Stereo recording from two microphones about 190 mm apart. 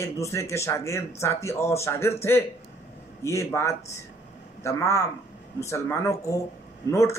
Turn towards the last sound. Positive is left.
turn(degrees=15)  # may be behind; listen again after turning